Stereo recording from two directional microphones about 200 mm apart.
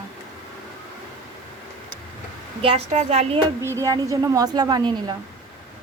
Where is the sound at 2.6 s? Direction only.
30° right (ahead or behind).